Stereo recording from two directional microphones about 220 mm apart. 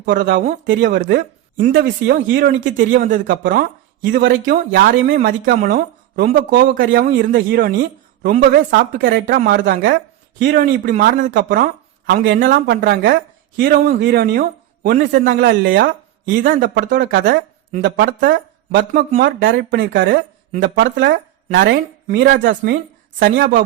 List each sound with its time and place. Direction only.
0.0 s speech: 45° right (ahead or behind)